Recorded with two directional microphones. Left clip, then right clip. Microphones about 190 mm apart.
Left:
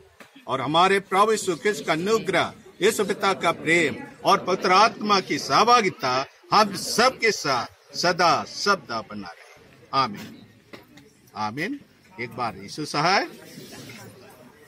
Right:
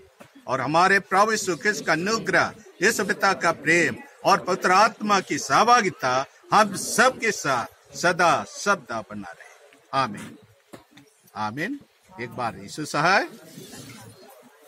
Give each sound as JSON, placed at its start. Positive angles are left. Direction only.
{"t": 0.5, "sound": "a man's voice", "side_deg": -10}
{"t": 11.3, "sound": "a man's voice", "side_deg": 0}